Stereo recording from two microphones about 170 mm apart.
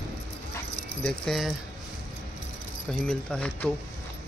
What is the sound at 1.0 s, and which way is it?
Speech, centre (ahead or behind).